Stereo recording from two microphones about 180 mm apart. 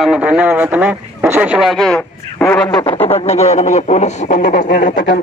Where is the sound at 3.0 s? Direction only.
35° left (ahead or behind).